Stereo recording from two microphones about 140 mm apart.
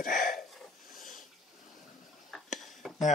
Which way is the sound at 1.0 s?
70° left (ahead or behind).